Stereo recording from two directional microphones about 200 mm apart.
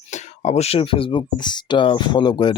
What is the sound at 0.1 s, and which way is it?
Speech, 35° left (ahead or behind).